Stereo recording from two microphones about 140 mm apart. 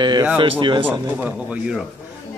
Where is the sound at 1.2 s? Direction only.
5° right (ahead or behind).